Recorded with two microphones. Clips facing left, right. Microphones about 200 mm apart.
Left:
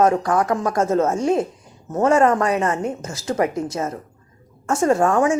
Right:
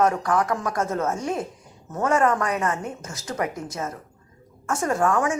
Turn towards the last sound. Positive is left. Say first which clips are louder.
# left 5 dB
turn(degrees=25)  # may be behind; listen again after turning